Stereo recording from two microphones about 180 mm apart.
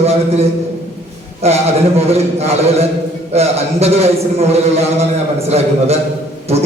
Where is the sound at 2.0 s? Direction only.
35° right (ahead or behind).